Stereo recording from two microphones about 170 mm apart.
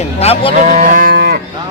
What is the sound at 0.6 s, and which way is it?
Cattle, 50° right (ahead or behind).